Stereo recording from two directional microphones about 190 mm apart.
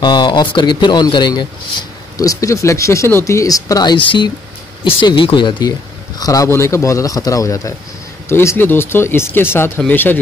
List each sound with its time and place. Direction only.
0.0 s speech: 20° left (ahead or behind)